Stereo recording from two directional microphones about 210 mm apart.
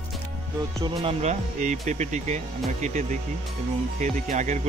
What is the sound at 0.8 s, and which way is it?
Speech, 25° right (ahead or behind).